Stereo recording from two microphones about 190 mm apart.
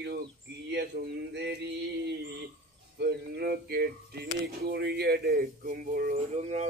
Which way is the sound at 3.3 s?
55° right (ahead or behind).